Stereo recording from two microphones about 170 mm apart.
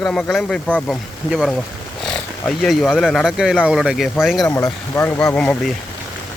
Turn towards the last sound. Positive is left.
turn(degrees=5)  # may be behind; listen again after turning